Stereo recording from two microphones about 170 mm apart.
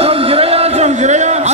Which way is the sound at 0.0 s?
35° right (ahead or behind).